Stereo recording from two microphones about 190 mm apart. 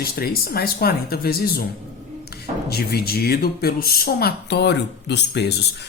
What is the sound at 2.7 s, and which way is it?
Speech, 55° left (ahead or behind).